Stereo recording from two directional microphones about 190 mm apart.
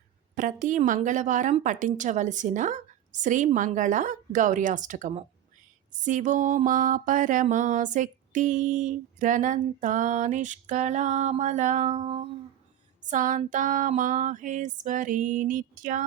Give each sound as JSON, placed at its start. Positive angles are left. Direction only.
{"t": 0.3, "sound": "mantra", "side_deg": -45}
{"t": 13.1, "sound": "female singing", "side_deg": -40}